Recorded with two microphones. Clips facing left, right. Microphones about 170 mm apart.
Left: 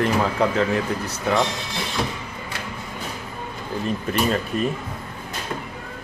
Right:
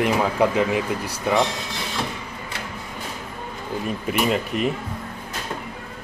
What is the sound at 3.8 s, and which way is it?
Speech, 15° right (ahead or behind).